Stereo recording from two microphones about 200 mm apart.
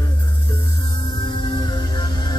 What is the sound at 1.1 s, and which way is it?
Music, 20° left (ahead or behind).